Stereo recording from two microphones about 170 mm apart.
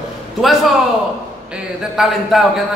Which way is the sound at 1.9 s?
Centre (ahead or behind).